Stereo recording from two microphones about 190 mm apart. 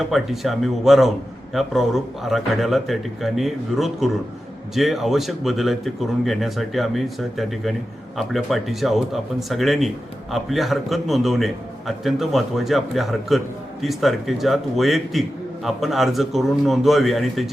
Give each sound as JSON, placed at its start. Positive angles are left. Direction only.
{"t": 0.0, "sound": "speech", "side_deg": 0}